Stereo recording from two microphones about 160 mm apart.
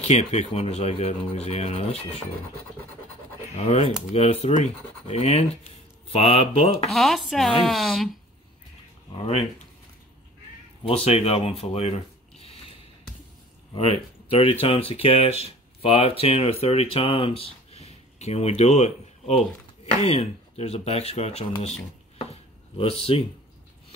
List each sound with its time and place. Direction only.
0.0 s speech: 45° left (ahead or behind)
3.5 s speech: 40° left (ahead or behind)
6.9 s speech: centre (ahead or behind)
9.1 s speech: 35° left (ahead or behind)
10.8 s a sound: 35° left (ahead or behind)
13.7 s speech: 35° left (ahead or behind)
22.3 s a sound: 35° left (ahead or behind)